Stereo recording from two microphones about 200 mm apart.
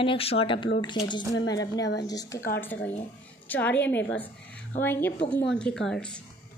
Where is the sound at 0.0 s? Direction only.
25° left (ahead or behind); by 6.2 s 5° left (ahead or behind).